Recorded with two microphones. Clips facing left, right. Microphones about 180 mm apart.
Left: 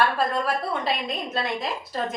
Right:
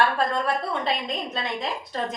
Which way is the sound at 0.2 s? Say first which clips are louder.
Even; 5° left (ahead or behind).